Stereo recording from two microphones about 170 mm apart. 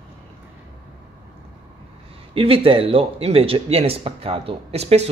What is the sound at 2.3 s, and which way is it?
Speech, 30° right (ahead or behind).